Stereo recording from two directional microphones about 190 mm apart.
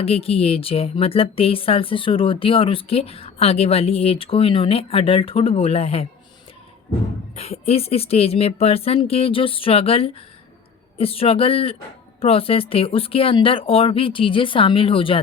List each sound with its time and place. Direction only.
0.0 s speech: 30° left (ahead or behind)
7.3 s speech: 30° left (ahead or behind)